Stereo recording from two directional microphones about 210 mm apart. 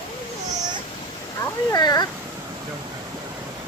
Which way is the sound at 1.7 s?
20° left (ahead or behind).